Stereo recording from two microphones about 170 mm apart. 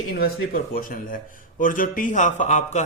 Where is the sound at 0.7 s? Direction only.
55° left (ahead or behind).